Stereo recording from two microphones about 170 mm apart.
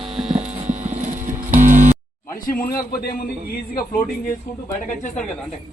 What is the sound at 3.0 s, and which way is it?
Speech, 60° left (ahead or behind).